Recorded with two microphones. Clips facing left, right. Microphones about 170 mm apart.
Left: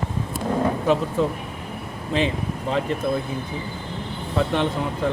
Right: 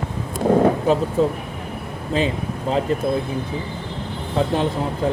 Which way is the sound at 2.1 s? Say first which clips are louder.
Right 1 dB; 40° right (ahead or behind).